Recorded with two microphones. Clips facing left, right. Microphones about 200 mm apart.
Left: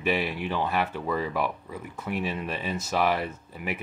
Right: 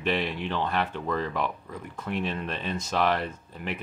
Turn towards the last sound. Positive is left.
turn(degrees=10)  # may be behind; listen again after turning